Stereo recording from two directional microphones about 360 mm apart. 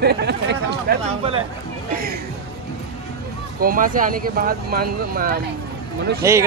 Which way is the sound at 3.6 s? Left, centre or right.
Right.